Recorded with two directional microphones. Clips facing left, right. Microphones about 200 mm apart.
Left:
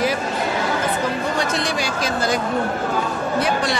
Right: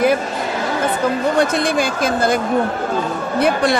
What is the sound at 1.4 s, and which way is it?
A woman's voice, 55° right (ahead or behind).